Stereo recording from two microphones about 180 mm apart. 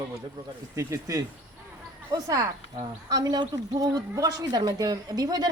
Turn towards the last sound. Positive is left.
turn(degrees=-20)  # may be behind; listen again after turning